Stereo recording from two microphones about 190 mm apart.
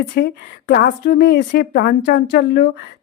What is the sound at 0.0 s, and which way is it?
A woman's voice, 50° left (ahead or behind).